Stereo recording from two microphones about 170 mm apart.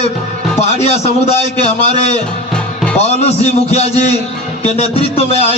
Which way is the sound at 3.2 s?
40° left (ahead or behind).